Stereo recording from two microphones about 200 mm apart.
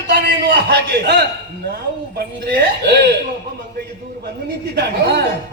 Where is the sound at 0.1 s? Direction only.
50° right (ahead or behind).